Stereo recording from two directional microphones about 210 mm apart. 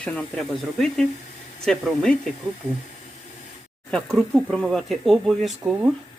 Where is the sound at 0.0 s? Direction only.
5° left (ahead or behind).